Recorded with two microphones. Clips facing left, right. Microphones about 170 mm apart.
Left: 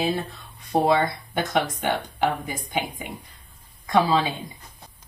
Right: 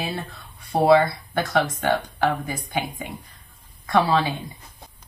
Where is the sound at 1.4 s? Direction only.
20° left (ahead or behind).